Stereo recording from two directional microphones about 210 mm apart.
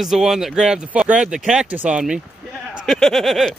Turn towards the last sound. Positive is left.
turn(degrees=0)  # may be behind; listen again after turning